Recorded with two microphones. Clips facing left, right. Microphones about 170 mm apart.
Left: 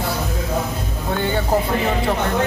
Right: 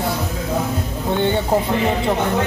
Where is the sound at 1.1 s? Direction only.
25° right (ahead or behind).